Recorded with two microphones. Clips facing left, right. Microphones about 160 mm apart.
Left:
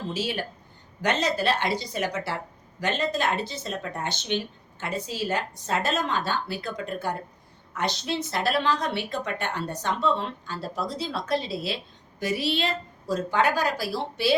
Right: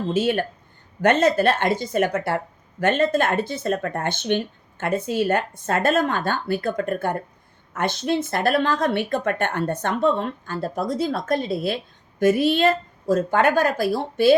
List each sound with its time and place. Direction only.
0.1 s speech: 55° right (ahead or behind)